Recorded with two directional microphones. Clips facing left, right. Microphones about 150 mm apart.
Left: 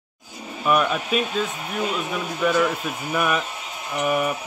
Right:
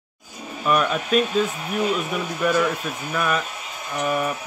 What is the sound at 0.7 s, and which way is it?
Speech, 5° left (ahead or behind).